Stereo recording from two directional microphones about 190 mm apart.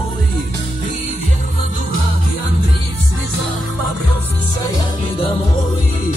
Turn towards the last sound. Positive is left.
turn(degrees=30)  # may be behind; listen again after turning